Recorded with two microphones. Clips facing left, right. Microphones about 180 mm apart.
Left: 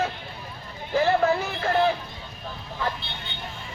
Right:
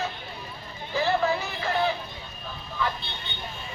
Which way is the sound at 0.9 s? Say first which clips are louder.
Left 4 dB; 50° left (ahead or behind).